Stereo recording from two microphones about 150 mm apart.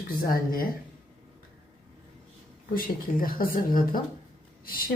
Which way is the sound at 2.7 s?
70° left (ahead or behind).